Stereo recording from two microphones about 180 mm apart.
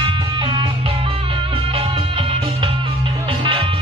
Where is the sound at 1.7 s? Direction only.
30° right (ahead or behind).